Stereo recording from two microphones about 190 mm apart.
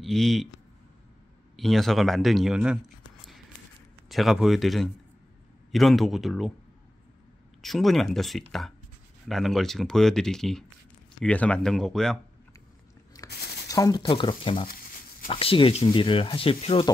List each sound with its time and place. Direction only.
0.0 s speech: centre (ahead or behind)
1.6 s speech: centre (ahead or behind)
4.1 s speech: centre (ahead or behind)
7.6 s speech: centre (ahead or behind)
13.3 s a sound: 60° left (ahead or behind)
13.7 s speech: 20° left (ahead or behind)